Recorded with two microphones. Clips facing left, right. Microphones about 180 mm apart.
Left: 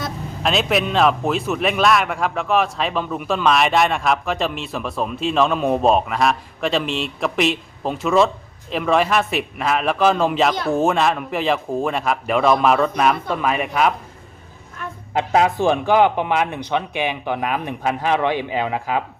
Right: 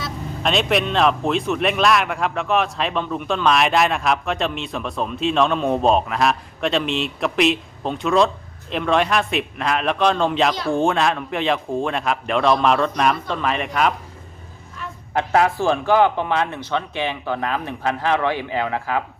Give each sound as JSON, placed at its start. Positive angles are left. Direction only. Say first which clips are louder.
{"t": 0.4, "sound": "speech", "louder": "even", "side_deg": 0}
{"t": 15.1, "sound": "a man's voice", "louder": "left 1 dB", "side_deg": 20}